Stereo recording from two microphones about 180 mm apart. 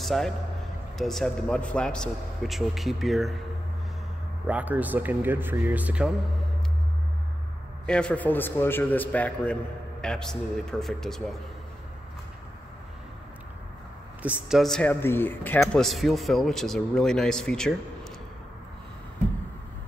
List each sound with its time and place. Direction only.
0.0 s a man's voice: centre (ahead or behind)
4.5 s speech: 10° right (ahead or behind)
7.8 s a man's voice: 5° left (ahead or behind)
14.2 s speech: 5° right (ahead or behind)